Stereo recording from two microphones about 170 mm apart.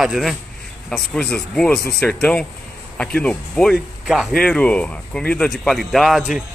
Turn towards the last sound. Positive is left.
turn(degrees=-5)  # may be behind; listen again after turning